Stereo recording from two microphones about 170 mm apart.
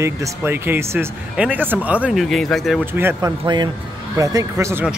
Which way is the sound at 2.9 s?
15° right (ahead or behind).